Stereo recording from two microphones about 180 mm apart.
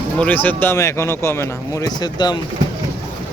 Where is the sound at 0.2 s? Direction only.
10° left (ahead or behind).